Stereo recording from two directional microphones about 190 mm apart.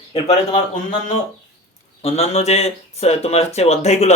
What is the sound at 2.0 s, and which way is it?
Speech, 30° left (ahead or behind).